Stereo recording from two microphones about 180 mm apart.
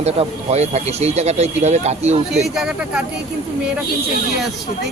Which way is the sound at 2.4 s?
5° right (ahead or behind).